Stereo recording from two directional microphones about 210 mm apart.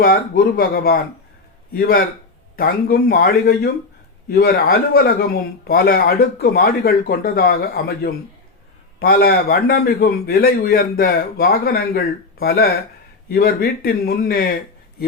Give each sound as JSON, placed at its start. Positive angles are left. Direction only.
{"t": 0.0, "sound": "speech", "side_deg": 45}